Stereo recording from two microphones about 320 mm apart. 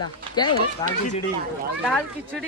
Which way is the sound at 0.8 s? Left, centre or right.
Centre.